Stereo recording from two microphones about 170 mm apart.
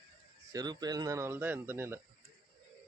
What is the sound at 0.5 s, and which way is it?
Speech, 25° right (ahead or behind).